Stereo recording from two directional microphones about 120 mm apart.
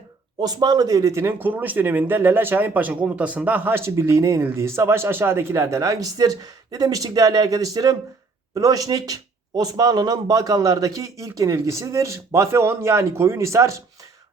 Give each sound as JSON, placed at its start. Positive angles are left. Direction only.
{"t": 0.3, "sound": "speech", "side_deg": -35}